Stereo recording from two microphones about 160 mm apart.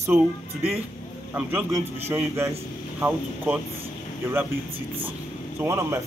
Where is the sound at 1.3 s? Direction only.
10° right (ahead or behind).